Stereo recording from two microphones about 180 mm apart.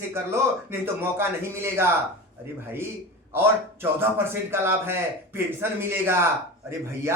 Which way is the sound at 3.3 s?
10° right (ahead or behind).